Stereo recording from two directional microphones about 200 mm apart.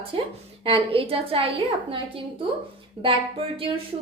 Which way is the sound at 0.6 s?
30° right (ahead or behind).